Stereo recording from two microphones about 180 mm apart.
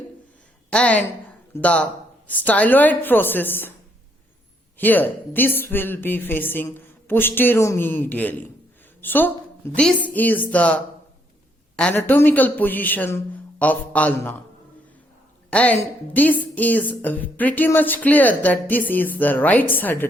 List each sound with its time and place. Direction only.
0.7 s a woman's voice: 5° left (ahead or behind)
4.8 s a woman's voice: 10° left (ahead or behind)
15.5 s a woman's voice: 10° left (ahead or behind)